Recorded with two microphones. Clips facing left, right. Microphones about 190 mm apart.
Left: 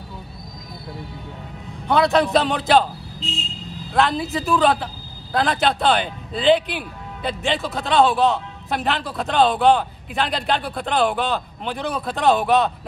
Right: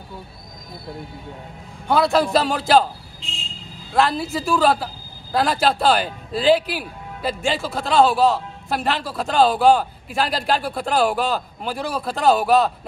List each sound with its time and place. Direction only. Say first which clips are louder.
1.9 s a man's voice: even; centre (ahead or behind)